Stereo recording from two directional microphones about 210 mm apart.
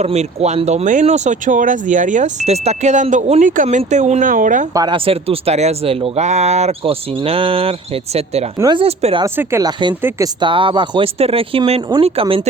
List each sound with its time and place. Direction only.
0.0 s speech: 30° right (ahead or behind)
4.7 s speech: 20° right (ahead or behind)
8.5 s speech: 20° right (ahead or behind)
9.2 s speech: 10° right (ahead or behind); by 12.4 s 25° right (ahead or behind)